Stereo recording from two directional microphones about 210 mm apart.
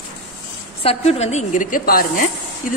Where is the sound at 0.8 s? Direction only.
30° left (ahead or behind).